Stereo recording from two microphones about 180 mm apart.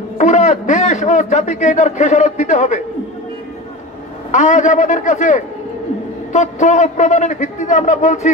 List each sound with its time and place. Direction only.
0.2 s a man's voice: 40° left (ahead or behind)
4.3 s a man's voice: 40° left (ahead or behind)